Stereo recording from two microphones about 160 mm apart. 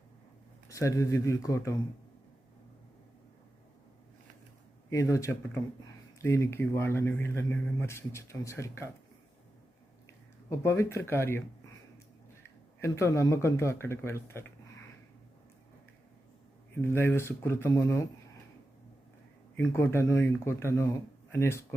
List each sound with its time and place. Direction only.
0.7 s speech: 20° left (ahead or behind)
4.9 s speech: 20° left (ahead or behind)
10.5 s speech: 15° left (ahead or behind)
12.8 s speech: 15° left (ahead or behind)
16.8 s speech: 15° left (ahead or behind)
19.5 s speech: 15° left (ahead or behind)